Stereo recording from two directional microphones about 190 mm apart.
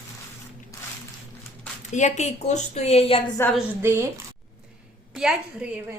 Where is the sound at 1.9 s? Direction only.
40° left (ahead or behind).